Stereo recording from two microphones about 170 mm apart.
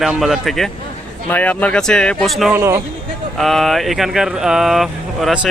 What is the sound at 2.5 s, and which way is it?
Speech, 15° right (ahead or behind).